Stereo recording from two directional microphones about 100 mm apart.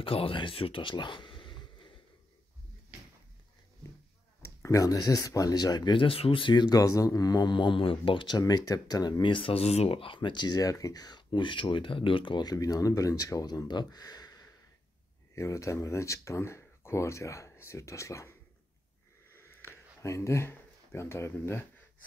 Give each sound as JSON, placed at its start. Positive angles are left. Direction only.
{"t": 0.0, "sound": "speech", "side_deg": 65}
{"t": 4.6, "sound": "speech", "side_deg": 35}
{"t": 8.4, "sound": "speech", "side_deg": 40}
{"t": 9.2, "sound": "speech", "side_deg": 60}
{"t": 19.3, "sound": "a sound", "side_deg": 25}